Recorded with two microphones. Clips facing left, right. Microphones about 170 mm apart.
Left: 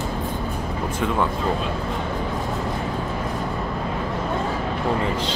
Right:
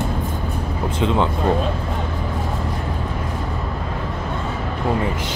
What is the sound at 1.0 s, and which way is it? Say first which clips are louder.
Speech: right 3 dB; 20° right (ahead or behind).